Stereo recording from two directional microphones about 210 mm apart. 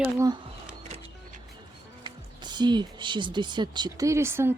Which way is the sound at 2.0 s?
20° right (ahead or behind).